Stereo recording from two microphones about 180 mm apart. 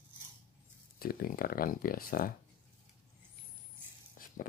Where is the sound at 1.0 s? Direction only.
55° left (ahead or behind).